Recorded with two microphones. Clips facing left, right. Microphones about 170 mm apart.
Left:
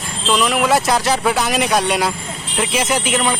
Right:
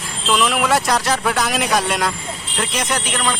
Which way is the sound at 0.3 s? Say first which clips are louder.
Left 2 dB; centre (ahead or behind).